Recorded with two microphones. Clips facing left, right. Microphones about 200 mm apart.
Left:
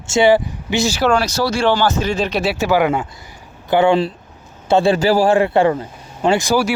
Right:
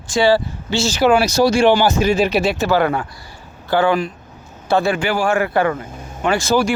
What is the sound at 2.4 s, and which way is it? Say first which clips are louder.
Speech: even; 10° left (ahead or behind).